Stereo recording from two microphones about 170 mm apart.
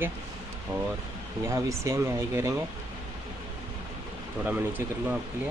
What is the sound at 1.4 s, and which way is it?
Speech, 15° right (ahead or behind).